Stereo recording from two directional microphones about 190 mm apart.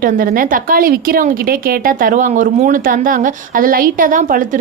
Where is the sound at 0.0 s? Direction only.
45° right (ahead or behind).